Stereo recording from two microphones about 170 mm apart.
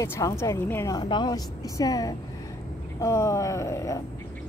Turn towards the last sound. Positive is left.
turn(degrees=20)  # may be behind; listen again after turning